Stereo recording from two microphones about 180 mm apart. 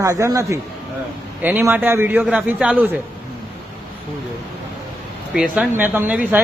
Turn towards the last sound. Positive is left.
turn(degrees=-10)  # may be behind; listen again after turning